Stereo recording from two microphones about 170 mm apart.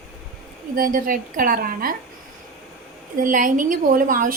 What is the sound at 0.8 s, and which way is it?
A woman's voice, 55° right (ahead or behind).